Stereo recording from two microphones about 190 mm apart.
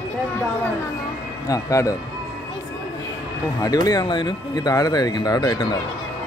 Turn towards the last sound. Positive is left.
turn(degrees=20)  # may be behind; listen again after turning